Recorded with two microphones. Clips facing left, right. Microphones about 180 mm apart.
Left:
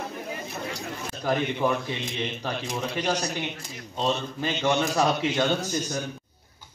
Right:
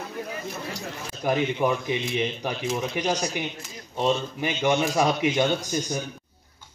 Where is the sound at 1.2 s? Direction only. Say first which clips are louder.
Right 2 dB; 15° right (ahead or behind).